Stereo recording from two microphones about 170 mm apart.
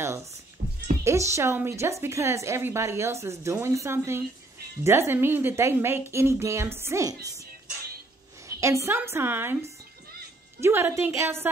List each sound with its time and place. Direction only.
0.6 s music: 55° right (ahead or behind)
1.0 s a woman's voice: 15° right (ahead or behind)
8.5 s a woman's voice: 20° right (ahead or behind)